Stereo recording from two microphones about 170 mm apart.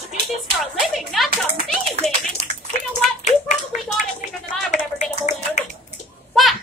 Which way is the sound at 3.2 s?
45° left (ahead or behind).